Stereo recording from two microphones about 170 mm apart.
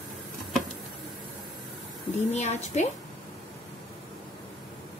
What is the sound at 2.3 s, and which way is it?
Speech, 40° left (ahead or behind).